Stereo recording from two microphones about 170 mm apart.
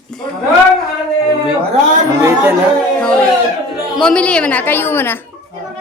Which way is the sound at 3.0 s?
5° left (ahead or behind).